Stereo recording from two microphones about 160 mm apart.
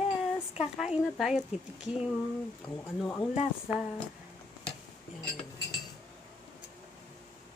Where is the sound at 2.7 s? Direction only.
10° left (ahead or behind).